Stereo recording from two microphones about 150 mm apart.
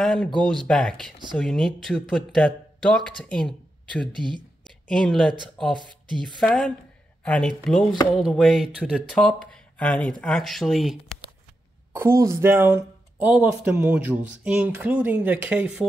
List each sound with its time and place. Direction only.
0.0 s a sound: centre (ahead or behind)
0.4 s speech: 5° left (ahead or behind)
5.8 s speech: 30° right (ahead or behind)
6.2 s speech: 5° left (ahead or behind)
11.9 s speech: 20° right (ahead or behind)